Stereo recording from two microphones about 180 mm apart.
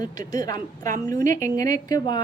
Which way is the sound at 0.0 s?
20° left (ahead or behind).